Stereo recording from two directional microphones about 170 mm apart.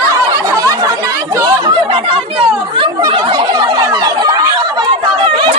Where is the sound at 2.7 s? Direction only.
30° right (ahead or behind).